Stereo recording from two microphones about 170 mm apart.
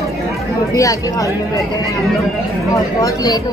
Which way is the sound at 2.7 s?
20° left (ahead or behind).